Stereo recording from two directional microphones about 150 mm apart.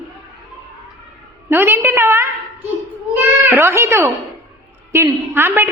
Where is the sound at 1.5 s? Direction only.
15° right (ahead or behind).